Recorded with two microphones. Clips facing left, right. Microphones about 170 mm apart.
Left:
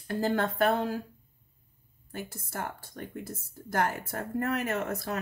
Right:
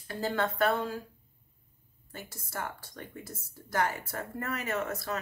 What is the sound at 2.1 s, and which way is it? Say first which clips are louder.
Speech: left 3 dB; 55° left (ahead or behind).